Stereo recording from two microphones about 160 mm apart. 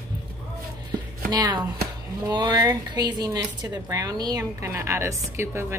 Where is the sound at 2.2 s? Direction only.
30° right (ahead or behind).